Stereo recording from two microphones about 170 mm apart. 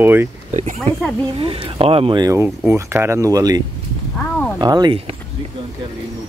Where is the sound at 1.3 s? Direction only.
35° right (ahead or behind).